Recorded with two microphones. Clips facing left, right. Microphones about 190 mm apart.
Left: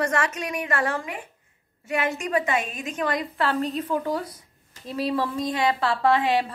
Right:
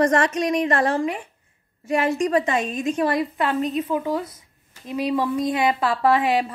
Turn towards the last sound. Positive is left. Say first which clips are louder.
# right 2 dB
turn(degrees=-20)  # may be behind; listen again after turning